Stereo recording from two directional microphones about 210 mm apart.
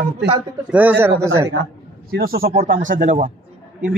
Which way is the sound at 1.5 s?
50° right (ahead or behind).